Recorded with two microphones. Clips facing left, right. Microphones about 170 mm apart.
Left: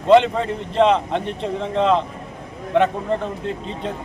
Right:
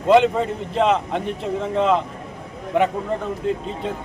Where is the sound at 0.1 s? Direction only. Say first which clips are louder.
Left 1 dB; 5° right (ahead or behind).